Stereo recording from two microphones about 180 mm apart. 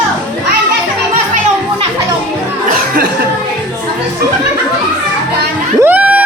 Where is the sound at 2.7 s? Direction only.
50° right (ahead or behind).